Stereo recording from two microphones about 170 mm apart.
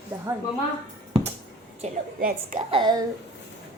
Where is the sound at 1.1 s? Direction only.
35° right (ahead or behind).